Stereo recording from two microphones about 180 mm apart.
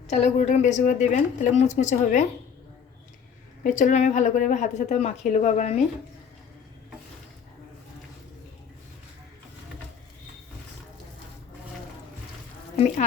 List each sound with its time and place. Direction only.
0.1 s speech: 40° left (ahead or behind)
3.6 s speech: 45° left (ahead or behind)